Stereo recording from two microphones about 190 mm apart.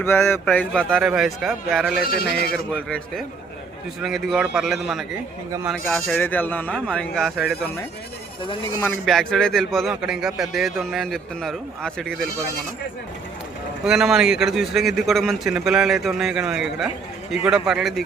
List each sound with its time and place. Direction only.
0.0 s a man's voice: 10° left (ahead or behind)
2.0 s speech: 50° left (ahead or behind)
2.5 s a man's voice: 5° left (ahead or behind)
6.1 s a man's voice: 10° left (ahead or behind)
8.8 s a man's voice: centre (ahead or behind)
13.8 s a man's voice: centre (ahead or behind)